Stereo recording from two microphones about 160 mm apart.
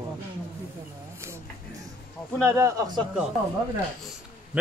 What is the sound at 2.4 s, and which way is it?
Speech, 15° right (ahead or behind).